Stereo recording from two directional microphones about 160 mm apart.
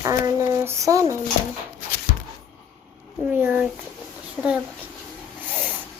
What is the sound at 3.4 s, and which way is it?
Speech, 10° right (ahead or behind).